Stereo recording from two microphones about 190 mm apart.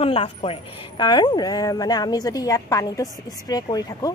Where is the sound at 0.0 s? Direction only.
30° left (ahead or behind).